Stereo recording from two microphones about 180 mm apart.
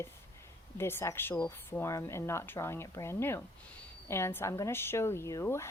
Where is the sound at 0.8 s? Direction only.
15° left (ahead or behind).